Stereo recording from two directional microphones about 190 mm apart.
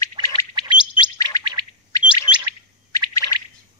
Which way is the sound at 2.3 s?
30° left (ahead or behind).